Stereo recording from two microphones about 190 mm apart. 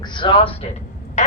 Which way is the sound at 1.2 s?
35° left (ahead or behind).